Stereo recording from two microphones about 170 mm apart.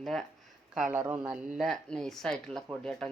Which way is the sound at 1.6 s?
5° left (ahead or behind).